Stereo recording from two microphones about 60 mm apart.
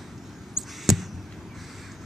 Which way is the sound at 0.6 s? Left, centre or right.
Centre.